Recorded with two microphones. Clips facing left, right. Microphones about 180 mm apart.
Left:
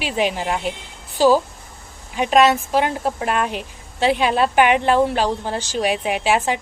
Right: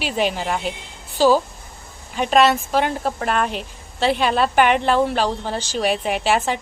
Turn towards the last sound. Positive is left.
turn(degrees=5)  # may be behind; listen again after turning